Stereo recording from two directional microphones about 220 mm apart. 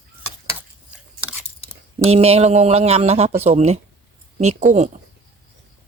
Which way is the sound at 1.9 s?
30° right (ahead or behind).